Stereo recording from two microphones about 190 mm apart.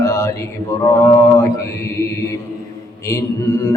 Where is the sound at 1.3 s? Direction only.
15° left (ahead or behind).